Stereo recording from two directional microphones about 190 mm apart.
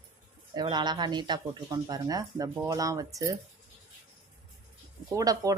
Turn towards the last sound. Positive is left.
turn(degrees=-20)  # may be behind; listen again after turning